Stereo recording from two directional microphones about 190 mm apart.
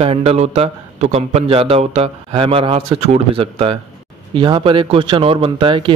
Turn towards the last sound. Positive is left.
turn(degrees=-25)  # may be behind; listen again after turning